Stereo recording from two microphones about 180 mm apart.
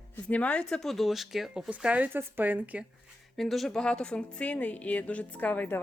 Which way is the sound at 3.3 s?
Centre (ahead or behind).